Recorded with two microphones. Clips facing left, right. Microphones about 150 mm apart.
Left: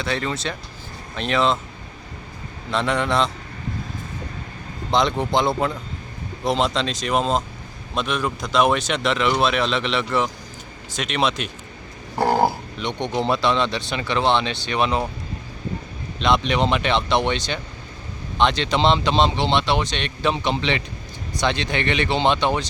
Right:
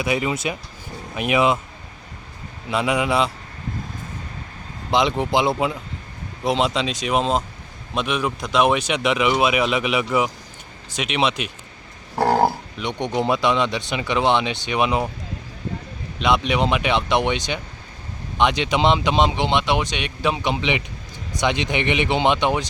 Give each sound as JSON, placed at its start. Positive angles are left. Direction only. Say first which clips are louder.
{"t": 0.0, "sound": "speech", "louder": "right 3 dB", "side_deg": -15}
{"t": 2.6, "sound": "speech", "louder": "right 1 dB", "side_deg": -5}
{"t": 4.9, "sound": "speech", "louder": "right 1 dB", "side_deg": -5}
{"t": 12.1, "sound": "grunt", "louder": "right 1 dB", "side_deg": 0}
{"t": 12.8, "sound": "speech", "louder": "right 1 dB", "side_deg": -10}
{"t": 16.2, "sound": "speech", "louder": "even", "side_deg": -10}